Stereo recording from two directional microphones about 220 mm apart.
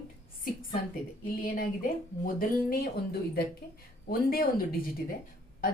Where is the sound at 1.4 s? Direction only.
40° left (ahead or behind).